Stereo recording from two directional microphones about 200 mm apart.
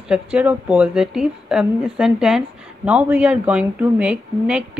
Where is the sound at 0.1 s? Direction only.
5° right (ahead or behind).